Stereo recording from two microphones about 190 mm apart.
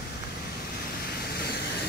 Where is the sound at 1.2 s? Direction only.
55° left (ahead or behind).